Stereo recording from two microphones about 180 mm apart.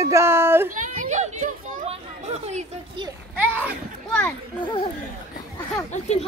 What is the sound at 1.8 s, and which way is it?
Chatter, 35° right (ahead or behind).